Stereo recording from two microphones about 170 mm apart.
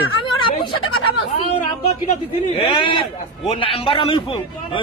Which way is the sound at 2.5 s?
30° left (ahead or behind).